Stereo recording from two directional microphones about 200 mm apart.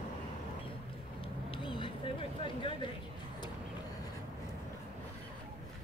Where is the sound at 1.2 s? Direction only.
25° left (ahead or behind).